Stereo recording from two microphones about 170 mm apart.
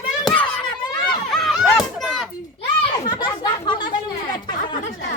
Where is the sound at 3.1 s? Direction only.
25° left (ahead or behind).